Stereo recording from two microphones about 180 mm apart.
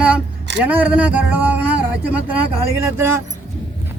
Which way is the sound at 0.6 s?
10° right (ahead or behind).